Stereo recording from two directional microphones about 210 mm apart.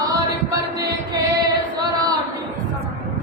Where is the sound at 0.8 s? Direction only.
20° right (ahead or behind).